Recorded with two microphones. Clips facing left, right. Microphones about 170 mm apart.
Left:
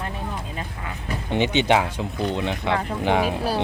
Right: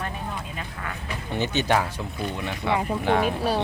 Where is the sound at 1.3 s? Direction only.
20° left (ahead or behind).